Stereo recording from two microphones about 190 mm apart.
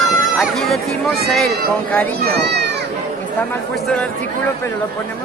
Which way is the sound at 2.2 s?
60° right (ahead or behind).